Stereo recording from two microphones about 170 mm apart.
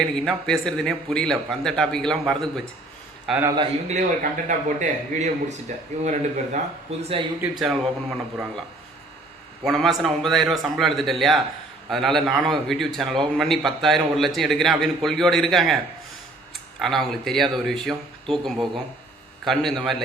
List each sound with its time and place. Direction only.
0.3 s a man's voice: centre (ahead or behind)
3.2 s a man's voice: 10° right (ahead or behind)
3.8 s a man's voice: 45° right (ahead or behind)
7.0 s speech: 35° right (ahead or behind)
7.6 s a man's voice: centre (ahead or behind)
9.6 s a man's voice: centre (ahead or behind)
16.8 s a man's voice: centre (ahead or behind)